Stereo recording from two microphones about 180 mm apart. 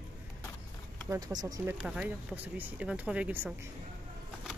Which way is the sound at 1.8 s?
5° right (ahead or behind).